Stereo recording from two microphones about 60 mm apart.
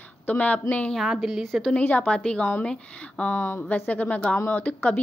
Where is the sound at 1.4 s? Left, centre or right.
Centre.